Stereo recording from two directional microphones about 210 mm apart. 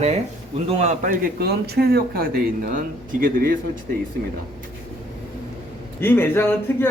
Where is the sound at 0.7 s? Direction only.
30° right (ahead or behind).